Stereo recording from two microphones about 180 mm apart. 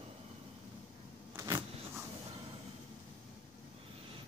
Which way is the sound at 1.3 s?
20° right (ahead or behind).